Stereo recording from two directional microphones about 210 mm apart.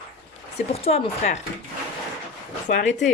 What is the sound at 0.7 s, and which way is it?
Speech, 30° left (ahead or behind).